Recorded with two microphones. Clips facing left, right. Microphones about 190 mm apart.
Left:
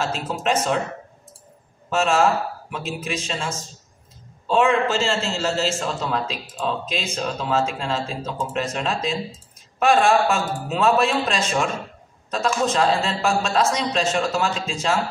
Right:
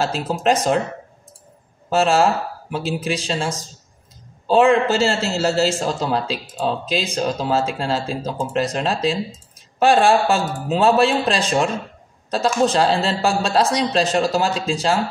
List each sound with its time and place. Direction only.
0.0 s a woman's voice: 35° right (ahead or behind)
1.9 s a woman's voice: 35° right (ahead or behind)